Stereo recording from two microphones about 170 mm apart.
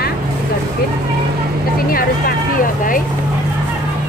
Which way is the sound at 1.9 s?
60° left (ahead or behind).